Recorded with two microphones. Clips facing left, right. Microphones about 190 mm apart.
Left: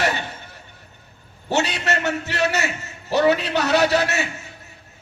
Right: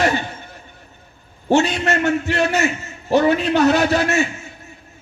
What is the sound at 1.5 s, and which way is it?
A man's voice, 50° right (ahead or behind).